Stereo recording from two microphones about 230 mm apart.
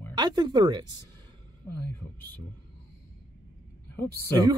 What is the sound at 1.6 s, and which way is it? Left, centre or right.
Speech, centre.